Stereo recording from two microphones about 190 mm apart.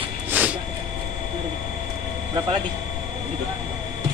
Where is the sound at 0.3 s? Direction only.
5° right (ahead or behind).